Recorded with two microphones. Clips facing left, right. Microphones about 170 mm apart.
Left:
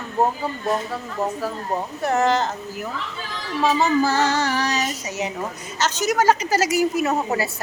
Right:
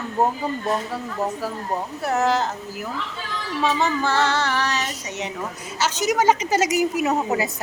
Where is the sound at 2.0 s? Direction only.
5° right (ahead or behind).